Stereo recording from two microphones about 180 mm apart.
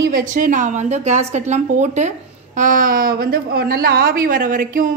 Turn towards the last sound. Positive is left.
turn(degrees=-50)  # may be behind; listen again after turning